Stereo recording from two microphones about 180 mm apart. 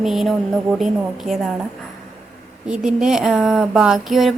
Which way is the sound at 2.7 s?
5° right (ahead or behind).